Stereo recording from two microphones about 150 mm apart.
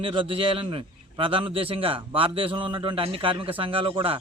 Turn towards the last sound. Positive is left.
turn(degrees=-35)  # may be behind; listen again after turning